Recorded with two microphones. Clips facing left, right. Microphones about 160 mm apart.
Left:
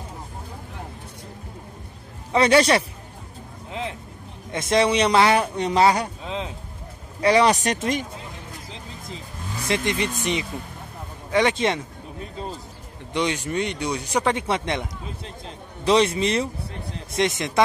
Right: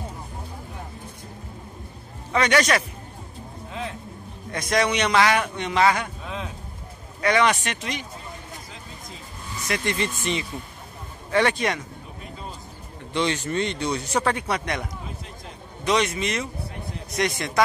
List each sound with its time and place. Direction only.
2.3 s a man's voice: 30° left (ahead or behind)
4.5 s a man's voice: 25° left (ahead or behind); by 8.1 s 45° left (ahead or behind)
9.7 s speech: 20° left (ahead or behind)
13.1 s a man's voice: 10° left (ahead or behind)